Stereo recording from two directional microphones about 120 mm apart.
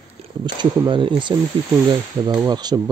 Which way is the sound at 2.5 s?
35° right (ahead or behind).